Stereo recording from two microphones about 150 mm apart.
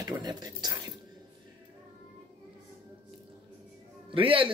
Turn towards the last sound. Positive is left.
turn(degrees=-35)  # may be behind; listen again after turning